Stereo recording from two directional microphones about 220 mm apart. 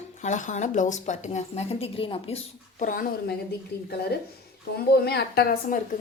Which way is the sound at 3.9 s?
50° left (ahead or behind).